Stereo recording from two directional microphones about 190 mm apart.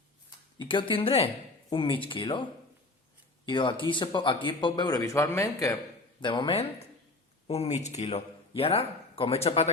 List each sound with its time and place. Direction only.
0.6 s speech: 25° left (ahead or behind)